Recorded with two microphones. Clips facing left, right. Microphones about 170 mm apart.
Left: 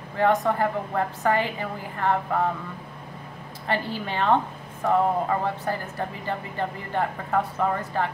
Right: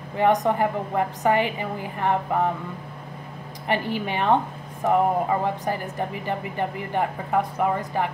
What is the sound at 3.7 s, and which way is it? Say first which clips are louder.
Speech: right 3 dB; 15° right (ahead or behind).